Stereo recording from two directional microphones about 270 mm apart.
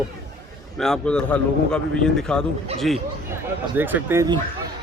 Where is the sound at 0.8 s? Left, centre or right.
Centre.